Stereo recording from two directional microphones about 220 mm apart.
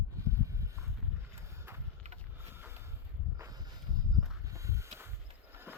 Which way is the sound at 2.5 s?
10° right (ahead or behind).